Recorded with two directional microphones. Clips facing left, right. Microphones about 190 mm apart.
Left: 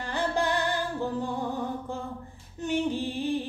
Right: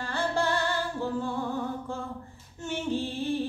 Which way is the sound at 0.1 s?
15° left (ahead or behind).